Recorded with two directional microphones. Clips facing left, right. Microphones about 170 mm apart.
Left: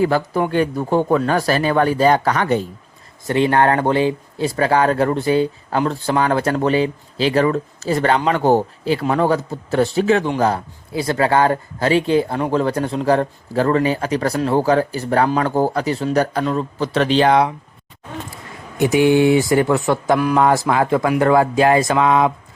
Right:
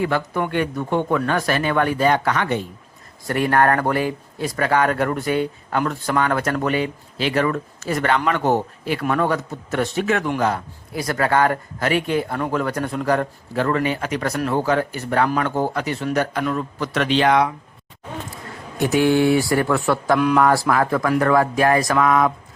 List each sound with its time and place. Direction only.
0.0 s speech: 35° left (ahead or behind)
3.2 s speech: 25° left (ahead or behind)
18.8 s speech: 15° left (ahead or behind)
20.1 s speech: 10° left (ahead or behind)
20.4 s speech: 20° left (ahead or behind)